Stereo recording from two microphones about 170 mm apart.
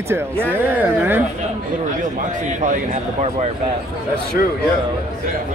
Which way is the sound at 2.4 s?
45° right (ahead or behind).